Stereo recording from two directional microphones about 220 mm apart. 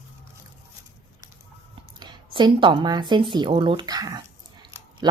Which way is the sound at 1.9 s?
20° right (ahead or behind).